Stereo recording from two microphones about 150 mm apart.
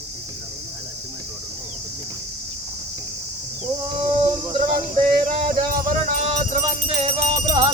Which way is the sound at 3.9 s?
30° right (ahead or behind).